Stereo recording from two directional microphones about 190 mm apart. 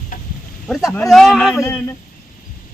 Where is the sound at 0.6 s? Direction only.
Centre (ahead or behind).